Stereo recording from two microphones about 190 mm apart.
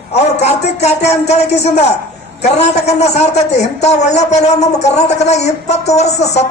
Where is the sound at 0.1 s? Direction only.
35° left (ahead or behind).